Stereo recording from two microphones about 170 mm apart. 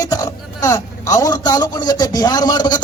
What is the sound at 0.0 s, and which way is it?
A man's voice, 20° left (ahead or behind).